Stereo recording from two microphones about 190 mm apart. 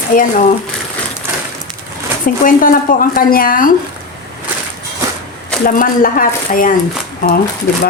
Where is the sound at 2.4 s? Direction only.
45° left (ahead or behind).